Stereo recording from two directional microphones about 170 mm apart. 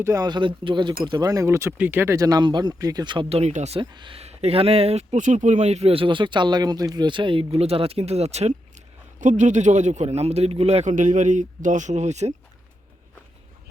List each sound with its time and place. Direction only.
0.0 s a man's voice: 20° right (ahead or behind); by 12.3 s 40° right (ahead or behind)